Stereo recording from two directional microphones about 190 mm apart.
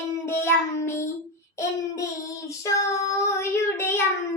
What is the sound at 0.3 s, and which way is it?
Child singing, 15° left (ahead or behind).